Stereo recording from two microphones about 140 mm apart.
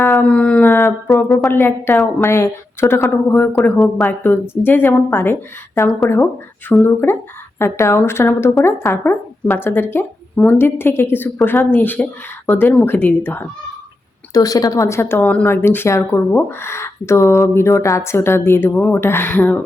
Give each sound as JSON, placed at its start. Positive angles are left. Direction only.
{"t": 0.1, "sound": "howl", "side_deg": 10}
{"t": 1.1, "sound": "speech", "side_deg": 0}
{"t": 1.5, "sound": "speech", "side_deg": 20}
{"t": 3.8, "sound": "speech", "side_deg": 0}
{"t": 4.2, "sound": "speech", "side_deg": 15}
{"t": 14.3, "sound": "speech", "side_deg": 25}